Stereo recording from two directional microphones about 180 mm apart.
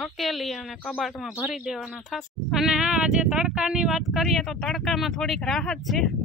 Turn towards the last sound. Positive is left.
turn(degrees=0)  # may be behind; listen again after turning